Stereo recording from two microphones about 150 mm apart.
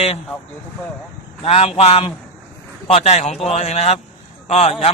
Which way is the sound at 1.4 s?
40° left (ahead or behind).